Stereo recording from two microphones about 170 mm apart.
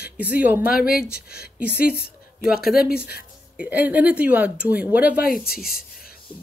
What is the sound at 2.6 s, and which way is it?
Speech, 65° left (ahead or behind).